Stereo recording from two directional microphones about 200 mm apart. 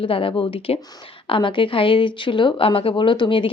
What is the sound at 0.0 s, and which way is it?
A woman's voice, 25° left (ahead or behind).